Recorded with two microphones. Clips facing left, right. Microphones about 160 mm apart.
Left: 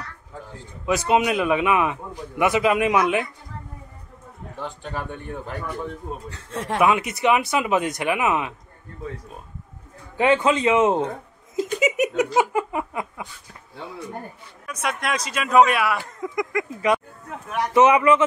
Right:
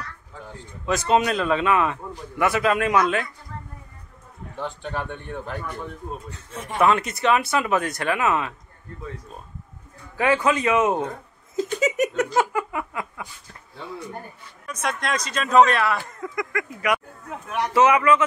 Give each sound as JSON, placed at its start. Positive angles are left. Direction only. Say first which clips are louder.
{"t": 0.8, "sound": "a man's voice", "louder": "left 1 dB", "side_deg": 10}
{"t": 4.6, "sound": "speech", "louder": "right 2 dB", "side_deg": 5}
{"t": 6.3, "sound": "speech", "louder": "left 6 dB", "side_deg": 90}
{"t": 6.8, "sound": "a man's voice", "louder": "even", "side_deg": 10}
{"t": 10.1, "sound": "a man's voice", "louder": "left 2 dB", "side_deg": 20}
{"t": 11.5, "sound": "a sound", "louder": "left 1 dB", "side_deg": 10}
{"t": 12.5, "sound": "a sound", "louder": "left 2 dB", "side_deg": 20}
{"t": 14.7, "sound": "a man's voice", "louder": "even", "side_deg": 5}
{"t": 17.3, "sound": "speech", "louder": "even", "side_deg": 0}
{"t": 17.7, "sound": "a man's voice", "louder": "left 2 dB", "side_deg": 20}